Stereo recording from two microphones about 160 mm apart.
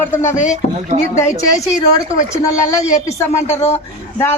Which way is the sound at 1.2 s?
15° left (ahead or behind).